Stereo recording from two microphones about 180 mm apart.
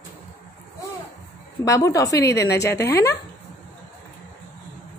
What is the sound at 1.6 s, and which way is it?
A woman's voice, 20° left (ahead or behind).